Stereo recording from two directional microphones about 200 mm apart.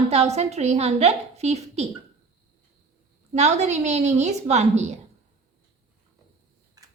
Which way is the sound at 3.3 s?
35° right (ahead or behind).